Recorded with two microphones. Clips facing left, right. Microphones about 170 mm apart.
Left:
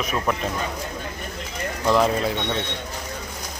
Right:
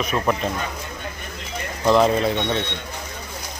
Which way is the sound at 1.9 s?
Centre (ahead or behind).